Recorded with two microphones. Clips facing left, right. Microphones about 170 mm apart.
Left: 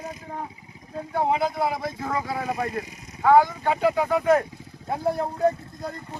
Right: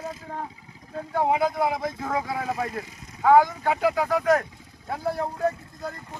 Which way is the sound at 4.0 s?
5° left (ahead or behind).